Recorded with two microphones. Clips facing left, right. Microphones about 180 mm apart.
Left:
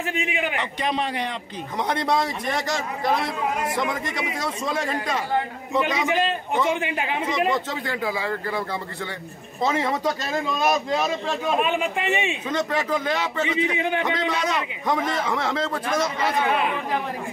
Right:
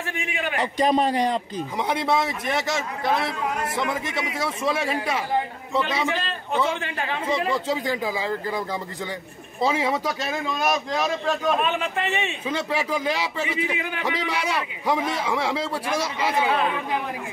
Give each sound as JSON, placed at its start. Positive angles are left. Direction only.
{"t": 0.1, "sound": "a man's voice", "side_deg": 20}
{"t": 0.6, "sound": "a man's voice", "side_deg": -40}
{"t": 1.9, "sound": "a man's voice", "side_deg": -5}
{"t": 6.0, "sound": "a man's voice", "side_deg": 15}
{"t": 7.5, "sound": "a man's voice", "side_deg": -10}
{"t": 12.4, "sound": "a man's voice", "side_deg": -10}
{"t": 13.4, "sound": "a man's voice", "side_deg": 25}
{"t": 14.0, "sound": "a man's voice", "side_deg": -10}